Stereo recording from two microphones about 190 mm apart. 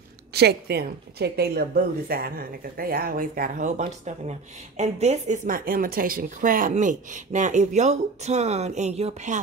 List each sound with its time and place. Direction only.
0.3 s a woman's voice: 60° right (ahead or behind); by 9.4 s 35° right (ahead or behind)